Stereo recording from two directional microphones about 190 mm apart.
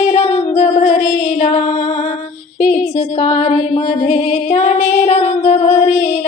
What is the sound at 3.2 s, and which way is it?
Female singing, 35° left (ahead or behind).